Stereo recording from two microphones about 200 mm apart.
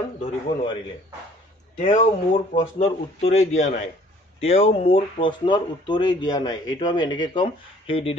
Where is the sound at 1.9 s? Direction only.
30° left (ahead or behind).